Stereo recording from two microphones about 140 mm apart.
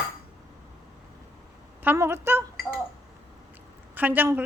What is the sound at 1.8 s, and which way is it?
Speech, 15° right (ahead or behind).